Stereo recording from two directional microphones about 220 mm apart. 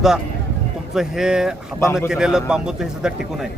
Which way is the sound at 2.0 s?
5° right (ahead or behind).